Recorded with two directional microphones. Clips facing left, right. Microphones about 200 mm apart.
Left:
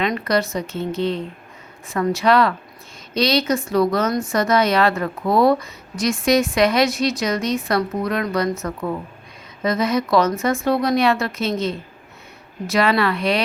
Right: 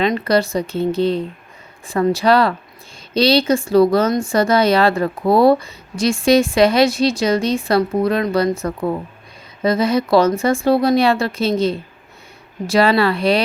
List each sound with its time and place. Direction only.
0.0 s speech: 30° right (ahead or behind)